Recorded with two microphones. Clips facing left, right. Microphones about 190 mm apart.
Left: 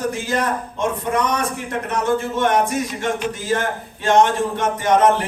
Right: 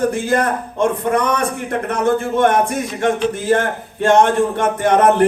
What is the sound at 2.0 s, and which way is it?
Speech, 55° right (ahead or behind).